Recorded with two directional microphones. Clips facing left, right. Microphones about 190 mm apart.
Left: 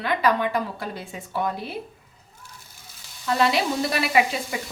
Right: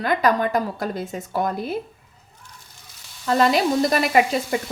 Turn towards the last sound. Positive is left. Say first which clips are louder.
# right 3 dB
turn(degrees=-45)  # may be behind; listen again after turning